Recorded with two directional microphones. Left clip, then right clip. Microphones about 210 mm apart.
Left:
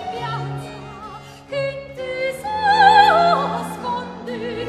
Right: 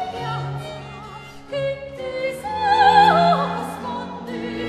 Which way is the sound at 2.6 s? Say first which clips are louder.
Left 2 dB; 30° left (ahead or behind).